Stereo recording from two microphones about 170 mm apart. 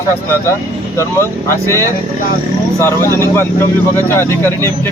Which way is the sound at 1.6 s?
15° left (ahead or behind).